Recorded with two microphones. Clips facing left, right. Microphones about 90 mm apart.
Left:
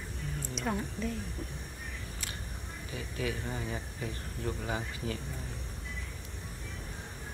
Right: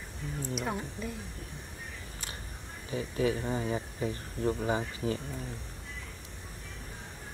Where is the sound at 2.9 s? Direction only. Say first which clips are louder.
Right 7 dB; 35° right (ahead or behind).